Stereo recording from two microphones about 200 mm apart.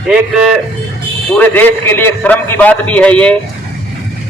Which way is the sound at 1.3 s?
10° left (ahead or behind).